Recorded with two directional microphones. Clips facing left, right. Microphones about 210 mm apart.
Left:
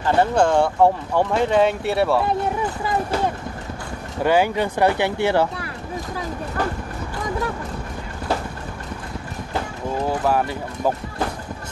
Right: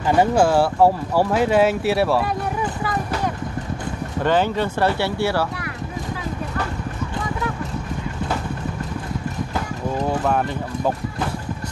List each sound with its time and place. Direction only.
0.0 s speech: 10° right (ahead or behind)
4.2 s speech: 10° left (ahead or behind)